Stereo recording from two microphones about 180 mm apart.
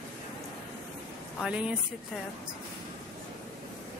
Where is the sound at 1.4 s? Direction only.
5° right (ahead or behind).